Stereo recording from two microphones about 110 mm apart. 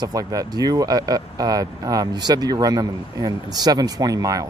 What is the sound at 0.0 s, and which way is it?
Speech, 35° right (ahead or behind).